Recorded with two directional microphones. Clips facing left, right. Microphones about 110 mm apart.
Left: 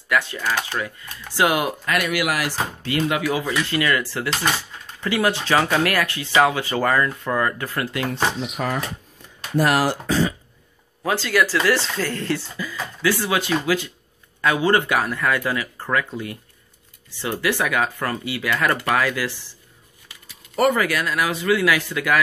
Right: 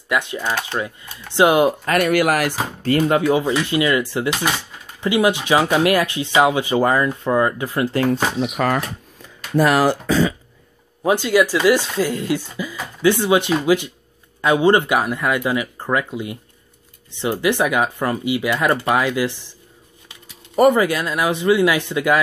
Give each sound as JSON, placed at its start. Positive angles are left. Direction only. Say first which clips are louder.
{"t": 0.1, "sound": "speech", "louder": "right 1 dB", "side_deg": -20}
{"t": 1.9, "sound": "speech", "louder": "right 6 dB", "side_deg": -45}
{"t": 3.1, "sound": "speech", "louder": "right 6 dB", "side_deg": -25}
{"t": 7.9, "sound": "speech", "louder": "right 8 dB", "side_deg": -35}
{"t": 8.4, "sound": "speech", "louder": "right 6 dB", "side_deg": -75}
{"t": 11.0, "sound": "speech", "louder": "right 5 dB", "side_deg": -20}